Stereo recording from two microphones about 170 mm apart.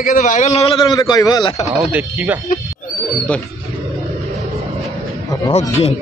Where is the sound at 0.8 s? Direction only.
25° left (ahead or behind).